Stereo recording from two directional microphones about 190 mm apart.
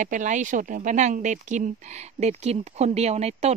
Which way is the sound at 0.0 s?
40° right (ahead or behind).